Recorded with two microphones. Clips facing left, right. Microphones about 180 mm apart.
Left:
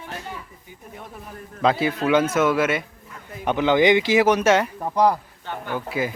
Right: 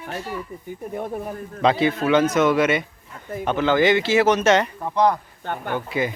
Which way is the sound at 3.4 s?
15° left (ahead or behind).